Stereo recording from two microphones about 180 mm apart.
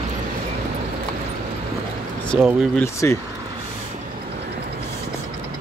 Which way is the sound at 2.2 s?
Centre (ahead or behind).